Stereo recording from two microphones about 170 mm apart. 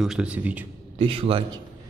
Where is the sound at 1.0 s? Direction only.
30° right (ahead or behind).